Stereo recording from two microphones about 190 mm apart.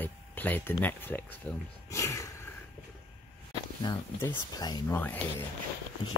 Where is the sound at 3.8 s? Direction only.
20° left (ahead or behind).